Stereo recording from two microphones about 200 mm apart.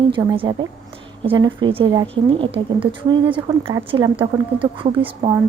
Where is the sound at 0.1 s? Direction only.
25° right (ahead or behind).